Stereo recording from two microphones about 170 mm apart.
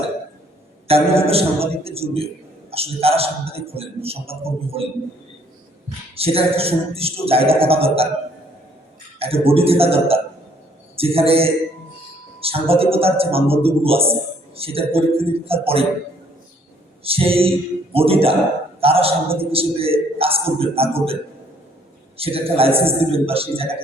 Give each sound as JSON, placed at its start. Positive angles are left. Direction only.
{"t": 0.9, "sound": "a man's voice", "side_deg": -35}
{"t": 6.1, "sound": "a man's voice", "side_deg": -35}
{"t": 9.1, "sound": "a man's voice", "side_deg": -35}
{"t": 17.0, "sound": "a man's voice", "side_deg": -35}
{"t": 22.2, "sound": "a man's voice", "side_deg": -35}